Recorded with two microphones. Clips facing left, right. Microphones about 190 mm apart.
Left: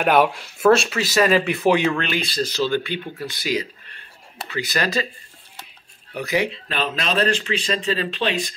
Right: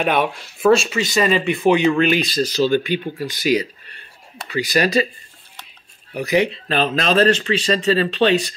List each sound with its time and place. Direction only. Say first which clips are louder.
0.0 s speech: left 2 dB; 10° left (ahead or behind)
1.9 s speech: right 6 dB; 15° right (ahead or behind)
6.7 s speech: right 8 dB; 40° right (ahead or behind)